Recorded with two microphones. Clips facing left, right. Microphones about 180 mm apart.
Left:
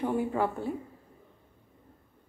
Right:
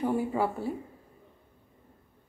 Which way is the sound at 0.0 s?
10° right (ahead or behind).